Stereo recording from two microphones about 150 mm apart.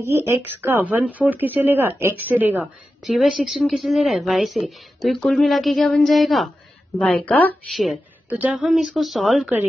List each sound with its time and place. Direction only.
0.0 s speech: 15° right (ahead or behind)
3.0 s a woman's voice: centre (ahead or behind)